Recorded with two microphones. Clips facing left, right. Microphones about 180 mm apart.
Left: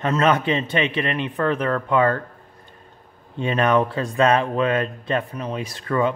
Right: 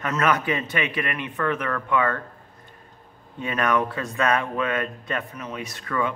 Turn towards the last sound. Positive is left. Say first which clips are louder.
# left 5 dB
turn(degrees=30)  # may be behind; listen again after turning